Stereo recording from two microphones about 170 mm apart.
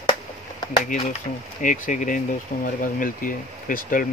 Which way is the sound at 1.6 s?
50° left (ahead or behind).